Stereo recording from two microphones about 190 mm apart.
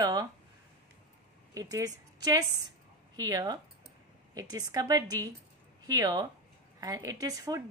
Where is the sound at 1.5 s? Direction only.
20° right (ahead or behind).